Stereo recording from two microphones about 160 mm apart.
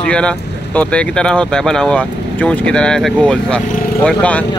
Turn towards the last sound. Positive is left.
turn(degrees=10)  # may be behind; listen again after turning